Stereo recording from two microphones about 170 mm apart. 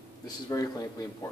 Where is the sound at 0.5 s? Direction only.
20° left (ahead or behind).